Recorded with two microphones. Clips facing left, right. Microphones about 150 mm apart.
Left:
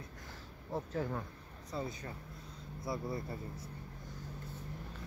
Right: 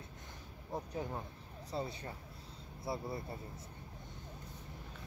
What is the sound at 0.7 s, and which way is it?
Speech, 15° right (ahead or behind).